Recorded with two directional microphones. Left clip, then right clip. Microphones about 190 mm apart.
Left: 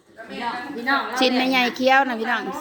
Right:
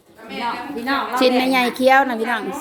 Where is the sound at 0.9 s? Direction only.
5° right (ahead or behind).